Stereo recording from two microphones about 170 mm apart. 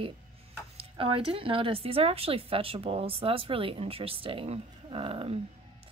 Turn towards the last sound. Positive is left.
turn(degrees=-35)  # may be behind; listen again after turning